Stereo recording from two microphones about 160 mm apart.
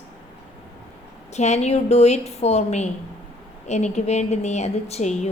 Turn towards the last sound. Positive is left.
turn(degrees=45)  # may be behind; listen again after turning